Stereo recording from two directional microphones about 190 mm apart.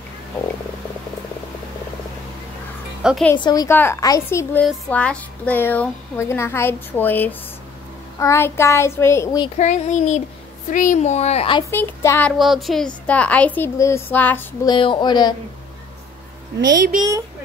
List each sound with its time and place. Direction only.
3.0 s speech: 5° right (ahead or behind)
3.3 s speech: 20° left (ahead or behind)
9.6 s a child's voice: 40° left (ahead or behind)
11.7 s speech: 10° left (ahead or behind)
12.4 s speech: centre (ahead or behind)
14.7 s speech: 25° left (ahead or behind)